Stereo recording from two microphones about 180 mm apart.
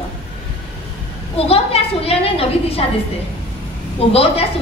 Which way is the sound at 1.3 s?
30° left (ahead or behind).